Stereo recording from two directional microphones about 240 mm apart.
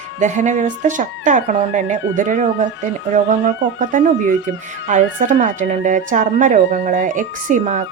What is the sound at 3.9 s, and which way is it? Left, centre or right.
Speech, right.